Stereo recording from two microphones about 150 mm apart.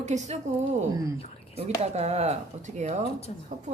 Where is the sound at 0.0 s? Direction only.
50° right (ahead or behind).